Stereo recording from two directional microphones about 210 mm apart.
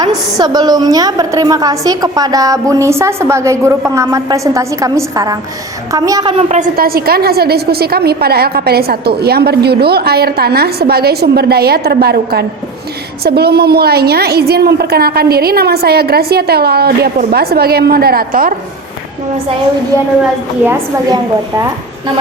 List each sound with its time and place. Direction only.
0.3 s a woman's voice: 20° right (ahead or behind)
6.5 s a woman's voice: 40° right (ahead or behind)
20.7 s a woman's voice: 15° right (ahead or behind)